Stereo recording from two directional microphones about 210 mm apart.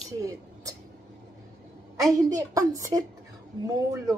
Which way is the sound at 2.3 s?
15° right (ahead or behind).